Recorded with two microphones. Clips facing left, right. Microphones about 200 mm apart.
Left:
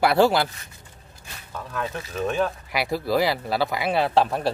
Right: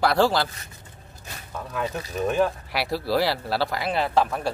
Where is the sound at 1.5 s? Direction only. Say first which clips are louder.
Right 1 dB; 10° right (ahead or behind).